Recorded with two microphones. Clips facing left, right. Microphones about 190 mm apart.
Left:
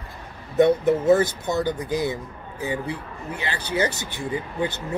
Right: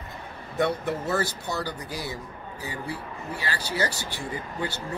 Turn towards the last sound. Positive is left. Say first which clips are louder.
# left 5 dB
turn(degrees=20)  # may be behind; listen again after turning